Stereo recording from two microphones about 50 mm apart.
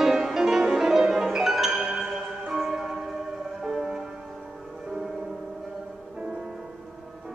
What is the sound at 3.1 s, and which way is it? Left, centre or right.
Music, centre.